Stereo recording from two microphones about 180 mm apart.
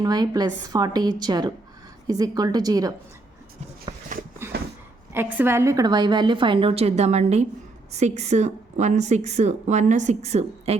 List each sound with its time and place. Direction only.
0.0 s a woman's voice: 20° right (ahead or behind)
3.9 s a sound: 25° right (ahead or behind)
5.1 s a woman's voice: 10° right (ahead or behind); by 10.8 s 35° right (ahead or behind)